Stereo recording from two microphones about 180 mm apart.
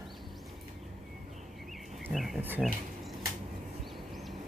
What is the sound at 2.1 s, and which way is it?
Speech, centre (ahead or behind).